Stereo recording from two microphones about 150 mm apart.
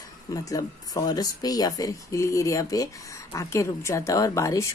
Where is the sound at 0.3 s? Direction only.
25° left (ahead or behind).